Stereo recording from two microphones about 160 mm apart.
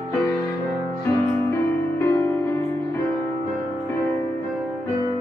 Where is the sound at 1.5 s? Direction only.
15° left (ahead or behind).